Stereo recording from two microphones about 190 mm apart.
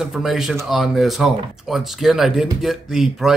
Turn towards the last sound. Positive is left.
turn(degrees=0)  # may be behind; listen again after turning